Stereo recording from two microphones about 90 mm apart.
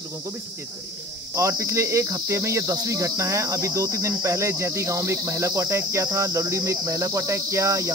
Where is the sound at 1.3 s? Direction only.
35° right (ahead or behind).